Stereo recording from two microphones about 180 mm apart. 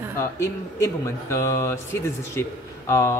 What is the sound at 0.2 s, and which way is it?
Speech, 15° left (ahead or behind).